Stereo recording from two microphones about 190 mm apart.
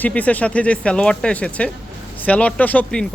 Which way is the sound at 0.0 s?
5° left (ahead or behind).